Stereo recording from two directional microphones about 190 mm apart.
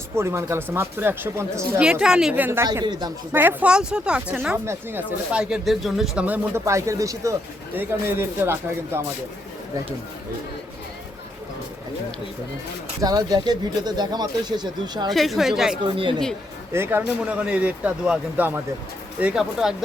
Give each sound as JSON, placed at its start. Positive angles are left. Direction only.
{"t": 0.2, "sound": "speech", "side_deg": -15}
{"t": 3.3, "sound": "speech", "side_deg": -10}
{"t": 13.0, "sound": "speech", "side_deg": -20}
{"t": 15.1, "sound": "speech", "side_deg": 0}
{"t": 15.8, "sound": "speech", "side_deg": -25}
{"t": 16.7, "sound": "speech", "side_deg": -10}